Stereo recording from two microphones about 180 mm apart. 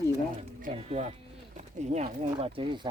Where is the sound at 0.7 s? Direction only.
35° right (ahead or behind).